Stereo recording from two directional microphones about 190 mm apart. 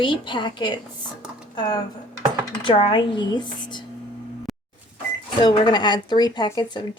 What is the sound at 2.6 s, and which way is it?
Speech, 25° left (ahead or behind).